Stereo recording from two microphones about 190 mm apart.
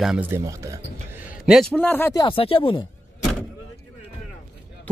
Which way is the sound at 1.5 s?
5° left (ahead or behind).